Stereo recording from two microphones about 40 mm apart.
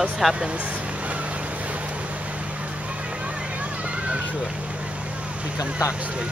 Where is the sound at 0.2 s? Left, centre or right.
Centre.